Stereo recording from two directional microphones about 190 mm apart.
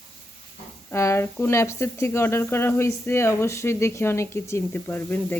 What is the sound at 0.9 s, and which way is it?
Speech, 15° left (ahead or behind).